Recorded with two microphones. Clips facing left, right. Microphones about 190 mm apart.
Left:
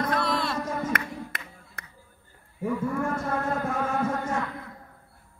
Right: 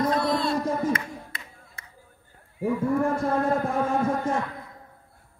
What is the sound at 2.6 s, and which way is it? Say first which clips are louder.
A man's voice: right 4 dB; 30° right (ahead or behind).